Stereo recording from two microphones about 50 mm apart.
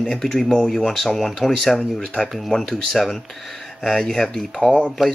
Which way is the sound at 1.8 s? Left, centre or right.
Centre.